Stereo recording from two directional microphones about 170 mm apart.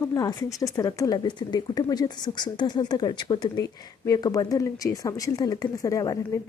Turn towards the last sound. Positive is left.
turn(degrees=20)  # may be behind; listen again after turning